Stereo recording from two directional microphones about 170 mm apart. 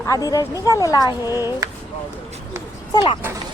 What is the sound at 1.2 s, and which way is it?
Speech, 15° right (ahead or behind).